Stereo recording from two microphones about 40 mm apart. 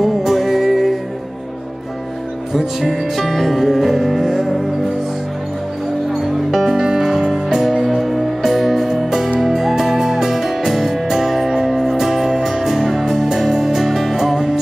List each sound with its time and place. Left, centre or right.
0.0 s music: centre
2.5 s music: centre
6.1 s music: centre